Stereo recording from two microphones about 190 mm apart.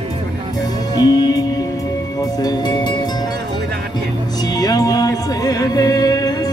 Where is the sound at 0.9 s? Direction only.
20° left (ahead or behind).